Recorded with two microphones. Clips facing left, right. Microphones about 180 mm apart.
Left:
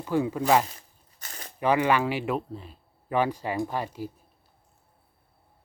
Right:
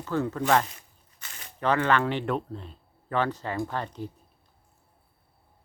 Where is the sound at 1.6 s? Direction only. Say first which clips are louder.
Left 1 dB; 10° left (ahead or behind).